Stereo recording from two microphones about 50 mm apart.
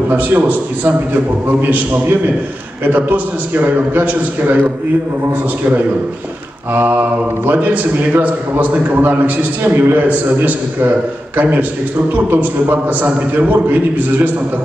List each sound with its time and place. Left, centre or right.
0.1 s a man's voice: right
5.6 s a man's voice: right